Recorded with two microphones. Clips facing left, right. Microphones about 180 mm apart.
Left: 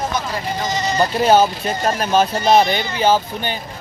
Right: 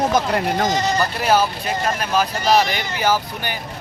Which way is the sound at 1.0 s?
25° left (ahead or behind).